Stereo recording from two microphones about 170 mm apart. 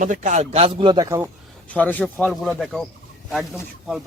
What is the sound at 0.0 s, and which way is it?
Speech, 45° right (ahead or behind).